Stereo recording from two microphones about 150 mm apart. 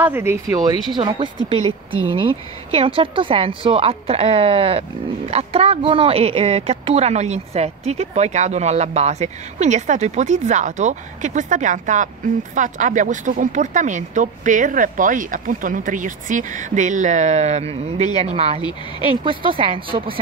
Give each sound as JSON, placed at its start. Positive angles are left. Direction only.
{"t": 0.0, "sound": "speech", "side_deg": -15}
{"t": 0.9, "sound": "a woman's voice", "side_deg": -30}